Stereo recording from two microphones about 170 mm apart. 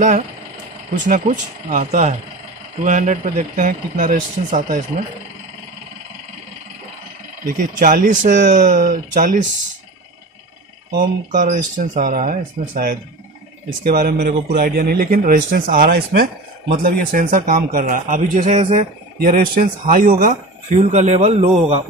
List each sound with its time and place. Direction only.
0.9 s speech: 50° right (ahead or behind)
7.4 s speech: 55° right (ahead or behind)
11.3 s speech: 45° right (ahead or behind)